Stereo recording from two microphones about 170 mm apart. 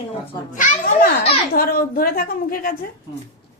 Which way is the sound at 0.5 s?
50° left (ahead or behind).